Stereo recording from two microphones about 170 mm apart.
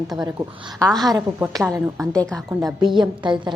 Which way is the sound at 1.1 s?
20° right (ahead or behind).